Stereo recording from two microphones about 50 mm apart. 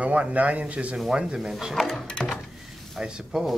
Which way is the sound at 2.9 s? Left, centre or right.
Centre.